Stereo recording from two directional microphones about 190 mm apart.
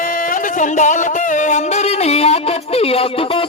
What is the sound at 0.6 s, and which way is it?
Music, 40° left (ahead or behind).